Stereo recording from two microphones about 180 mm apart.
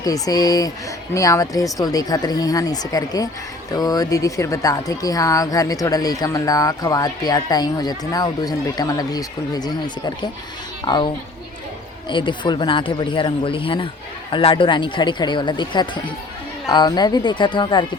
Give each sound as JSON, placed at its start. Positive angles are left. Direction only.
{"t": 0.0, "sound": "speech", "side_deg": 20}